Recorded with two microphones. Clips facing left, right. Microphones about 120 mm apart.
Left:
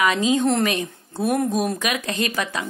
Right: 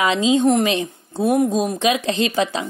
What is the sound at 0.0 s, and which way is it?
Speech, 25° right (ahead or behind).